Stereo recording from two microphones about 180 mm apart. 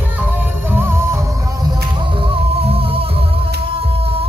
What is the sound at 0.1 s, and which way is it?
Music, 10° right (ahead or behind).